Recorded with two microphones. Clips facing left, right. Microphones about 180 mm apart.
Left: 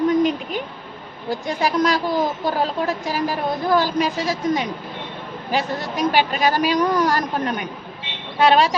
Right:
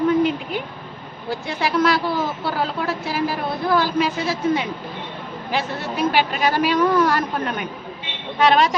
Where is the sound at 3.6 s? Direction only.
15° left (ahead or behind).